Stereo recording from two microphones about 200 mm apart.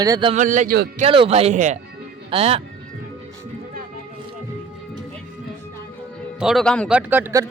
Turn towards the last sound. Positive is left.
turn(degrees=-15)  # may be behind; listen again after turning